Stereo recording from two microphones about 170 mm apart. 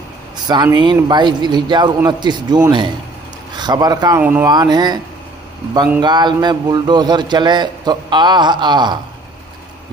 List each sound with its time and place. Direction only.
0.5 s a man's voice: 25° right (ahead or behind)
4.2 s speech: 10° right (ahead or behind)
4.5 s a man's voice: 25° right (ahead or behind)